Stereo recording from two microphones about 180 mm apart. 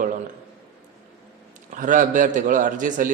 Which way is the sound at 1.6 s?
45° right (ahead or behind).